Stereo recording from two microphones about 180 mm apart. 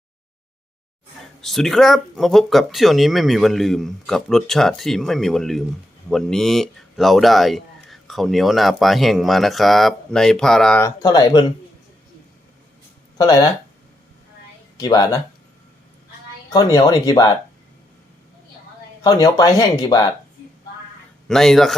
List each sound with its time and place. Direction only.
1.4 s speech: centre (ahead or behind)
10.8 s speech: 20° left (ahead or behind)
13.1 s speech: 20° left (ahead or behind)
14.8 s speech: 20° left (ahead or behind)
16.5 s speech: 20° left (ahead or behind)
19.0 s speech: 20° left (ahead or behind)
21.2 s speech: centre (ahead or behind)